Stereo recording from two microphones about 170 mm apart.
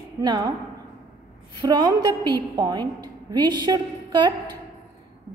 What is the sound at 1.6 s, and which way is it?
A woman's voice, 25° right (ahead or behind).